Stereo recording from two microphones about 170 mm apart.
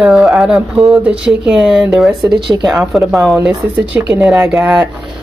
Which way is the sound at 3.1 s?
Centre (ahead or behind).